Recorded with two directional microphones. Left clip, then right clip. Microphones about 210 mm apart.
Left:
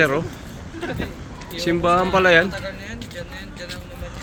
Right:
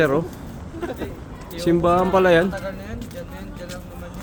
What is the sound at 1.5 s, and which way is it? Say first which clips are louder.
Speech: even; 25° right (ahead or behind).